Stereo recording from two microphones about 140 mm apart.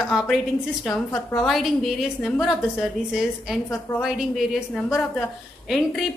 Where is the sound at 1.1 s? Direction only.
25° left (ahead or behind).